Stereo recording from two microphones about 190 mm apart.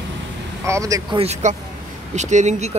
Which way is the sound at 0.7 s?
15° right (ahead or behind).